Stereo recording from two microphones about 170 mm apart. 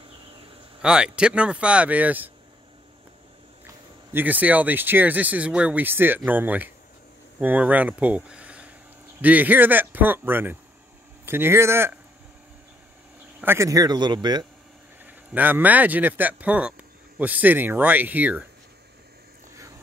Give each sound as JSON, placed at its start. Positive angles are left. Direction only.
{"t": 0.8, "sound": "speech", "side_deg": -5}
{"t": 4.1, "sound": "speech", "side_deg": -10}
{"t": 13.4, "sound": "speech", "side_deg": -15}
{"t": 15.0, "sound": "speech", "side_deg": -10}